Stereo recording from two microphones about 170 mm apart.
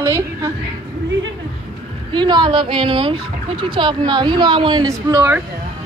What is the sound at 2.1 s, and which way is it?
Speech, 25° right (ahead or behind).